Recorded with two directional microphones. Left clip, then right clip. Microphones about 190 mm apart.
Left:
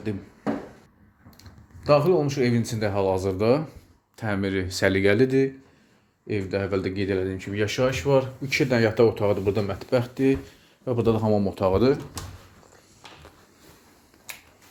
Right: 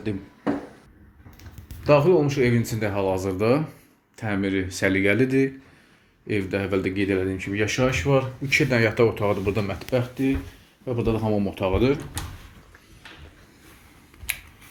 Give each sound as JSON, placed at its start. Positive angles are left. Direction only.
{"t": 1.4, "sound": "speech", "side_deg": 0}
{"t": 6.2, "sound": "speech", "side_deg": 0}
{"t": 9.9, "sound": "speech", "side_deg": 30}